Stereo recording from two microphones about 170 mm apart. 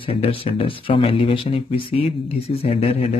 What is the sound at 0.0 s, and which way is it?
Speech, 35° left (ahead or behind).